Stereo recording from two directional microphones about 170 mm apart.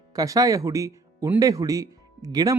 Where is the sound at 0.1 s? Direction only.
20° right (ahead or behind).